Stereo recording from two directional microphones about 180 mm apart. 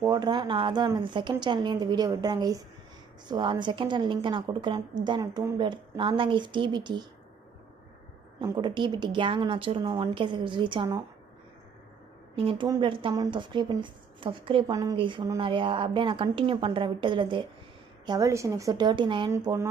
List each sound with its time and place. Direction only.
0.0 s speech: 20° right (ahead or behind)
8.4 s speech: 25° right (ahead or behind)
12.4 s speech: 30° right (ahead or behind)
19.3 s speech: 15° right (ahead or behind)